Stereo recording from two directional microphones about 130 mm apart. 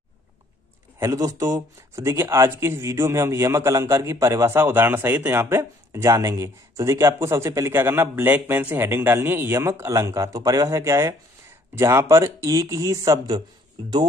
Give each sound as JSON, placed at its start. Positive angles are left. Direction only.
{"t": 0.9, "sound": "speech", "side_deg": -25}